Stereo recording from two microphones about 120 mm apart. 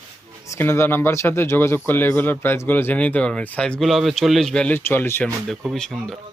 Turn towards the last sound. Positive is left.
turn(degrees=0)  # may be behind; listen again after turning